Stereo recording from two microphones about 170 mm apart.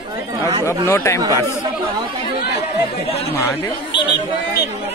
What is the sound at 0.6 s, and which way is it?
Speech, 15° left (ahead or behind).